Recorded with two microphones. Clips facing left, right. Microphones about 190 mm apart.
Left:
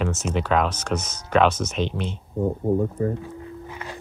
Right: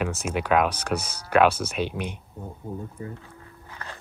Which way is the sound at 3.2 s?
15° left (ahead or behind).